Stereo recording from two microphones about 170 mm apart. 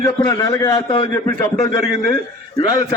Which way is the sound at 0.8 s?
25° left (ahead or behind).